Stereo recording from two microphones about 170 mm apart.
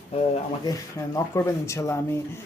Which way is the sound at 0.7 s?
15° left (ahead or behind).